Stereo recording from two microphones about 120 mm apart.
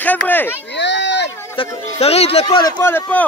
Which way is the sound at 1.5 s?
55° left (ahead or behind).